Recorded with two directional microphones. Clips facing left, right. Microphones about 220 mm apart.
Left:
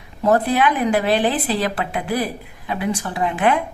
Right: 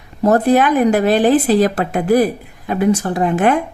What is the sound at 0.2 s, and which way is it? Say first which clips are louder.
A woman's voice: right 5 dB; 45° right (ahead or behind).